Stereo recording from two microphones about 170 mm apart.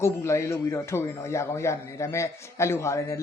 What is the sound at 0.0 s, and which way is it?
A man's voice, 15° left (ahead or behind).